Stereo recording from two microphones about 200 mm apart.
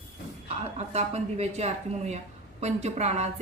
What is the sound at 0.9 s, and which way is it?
A woman's voice, 30° right (ahead or behind).